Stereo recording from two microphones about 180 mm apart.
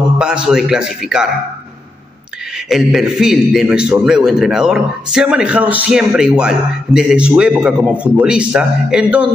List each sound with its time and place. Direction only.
0.2 s a man's voice: 5° right (ahead or behind)
2.7 s a man's voice: 5° right (ahead or behind)